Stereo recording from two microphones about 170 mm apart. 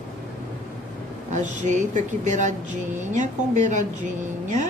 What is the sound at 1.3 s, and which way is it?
A woman's voice, 45° right (ahead or behind).